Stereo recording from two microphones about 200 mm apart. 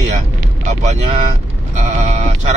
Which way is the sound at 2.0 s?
35° right (ahead or behind).